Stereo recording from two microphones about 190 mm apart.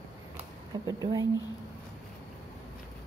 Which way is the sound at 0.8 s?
20° right (ahead or behind).